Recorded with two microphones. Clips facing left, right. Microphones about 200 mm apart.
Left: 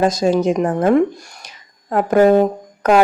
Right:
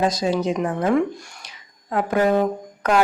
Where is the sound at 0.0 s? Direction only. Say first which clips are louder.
Left 5 dB; 45° left (ahead or behind).